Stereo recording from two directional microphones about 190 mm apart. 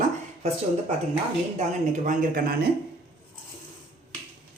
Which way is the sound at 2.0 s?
50° right (ahead or behind).